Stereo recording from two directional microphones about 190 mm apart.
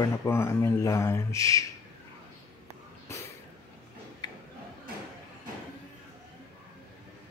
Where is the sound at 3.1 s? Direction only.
15° left (ahead or behind).